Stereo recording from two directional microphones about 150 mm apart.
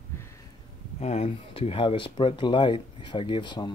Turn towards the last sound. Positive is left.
turn(degrees=30)  # may be behind; listen again after turning